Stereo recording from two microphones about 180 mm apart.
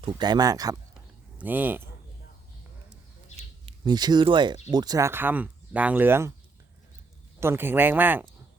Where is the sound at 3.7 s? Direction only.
25° right (ahead or behind).